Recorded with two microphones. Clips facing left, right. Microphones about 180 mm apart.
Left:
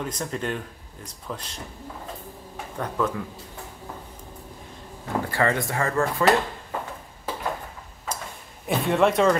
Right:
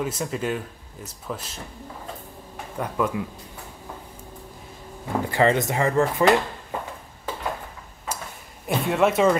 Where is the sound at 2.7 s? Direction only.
10° right (ahead or behind).